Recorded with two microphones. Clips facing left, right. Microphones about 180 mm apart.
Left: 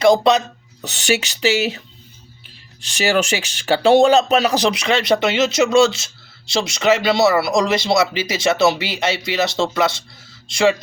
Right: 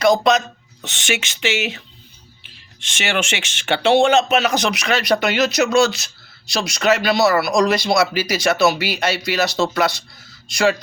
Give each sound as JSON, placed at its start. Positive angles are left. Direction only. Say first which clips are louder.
{"t": 0.0, "sound": "speech", "louder": "left 2 dB", "side_deg": 30}
{"t": 2.8, "sound": "speech", "louder": "left 5 dB", "side_deg": 35}